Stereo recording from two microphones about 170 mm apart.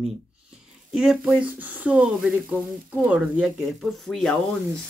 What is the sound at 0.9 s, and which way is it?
Speech, 5° right (ahead or behind).